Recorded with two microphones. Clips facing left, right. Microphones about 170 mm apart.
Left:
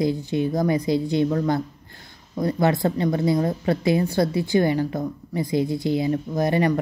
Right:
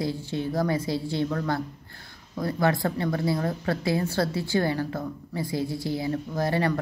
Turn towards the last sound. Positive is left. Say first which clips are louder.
# left 5 dB
turn(degrees=15)  # may be behind; listen again after turning